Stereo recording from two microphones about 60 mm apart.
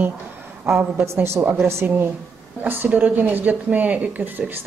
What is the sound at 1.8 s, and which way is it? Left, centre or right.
A woman's voice, right.